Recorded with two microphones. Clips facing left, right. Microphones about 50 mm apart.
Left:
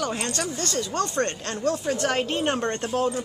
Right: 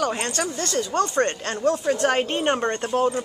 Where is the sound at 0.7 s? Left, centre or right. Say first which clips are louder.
Right 5 dB; right.